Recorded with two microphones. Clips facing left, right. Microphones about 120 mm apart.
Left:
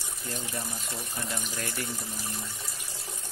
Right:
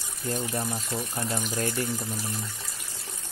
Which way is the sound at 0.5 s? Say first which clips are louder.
Right 6 dB; 30° right (ahead or behind).